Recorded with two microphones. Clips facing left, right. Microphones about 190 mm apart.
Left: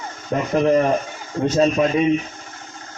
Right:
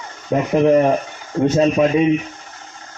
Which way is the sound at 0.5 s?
10° right (ahead or behind).